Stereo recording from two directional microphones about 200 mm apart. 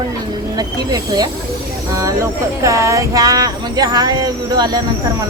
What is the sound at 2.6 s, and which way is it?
Speech, 15° right (ahead or behind).